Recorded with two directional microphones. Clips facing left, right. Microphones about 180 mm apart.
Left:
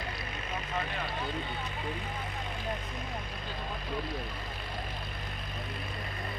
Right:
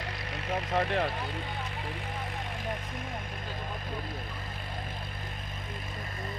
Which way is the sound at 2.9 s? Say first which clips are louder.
Right 1 dB; 50° right (ahead or behind).